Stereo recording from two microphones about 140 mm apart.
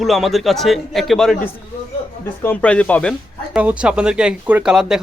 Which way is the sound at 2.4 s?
10° left (ahead or behind).